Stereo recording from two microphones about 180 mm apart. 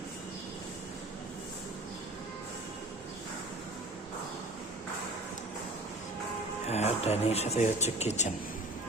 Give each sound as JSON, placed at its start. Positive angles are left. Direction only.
{"t": 6.7, "sound": "speech", "side_deg": 35}